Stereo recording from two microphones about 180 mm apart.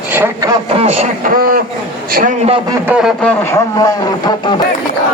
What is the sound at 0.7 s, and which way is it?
Speech, 35° right (ahead or behind).